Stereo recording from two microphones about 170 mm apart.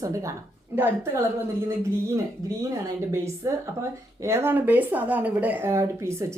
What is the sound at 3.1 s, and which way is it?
Speech, 15° right (ahead or behind).